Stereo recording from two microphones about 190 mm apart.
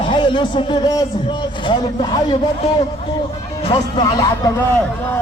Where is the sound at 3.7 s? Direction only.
20° left (ahead or behind).